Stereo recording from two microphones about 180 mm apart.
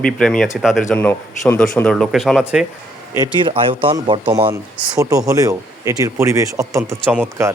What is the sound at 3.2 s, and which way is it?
Speech, 25° right (ahead or behind).